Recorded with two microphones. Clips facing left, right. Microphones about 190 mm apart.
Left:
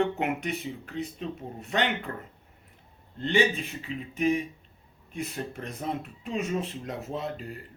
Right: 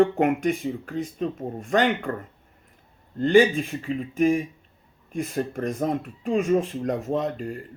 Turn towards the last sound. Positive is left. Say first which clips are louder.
# right 8 dB
turn(degrees=-45)  # may be behind; listen again after turning